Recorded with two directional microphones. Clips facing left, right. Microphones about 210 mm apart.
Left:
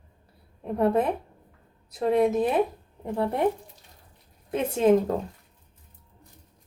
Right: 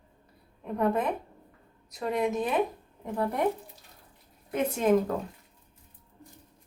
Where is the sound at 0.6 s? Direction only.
30° left (ahead or behind).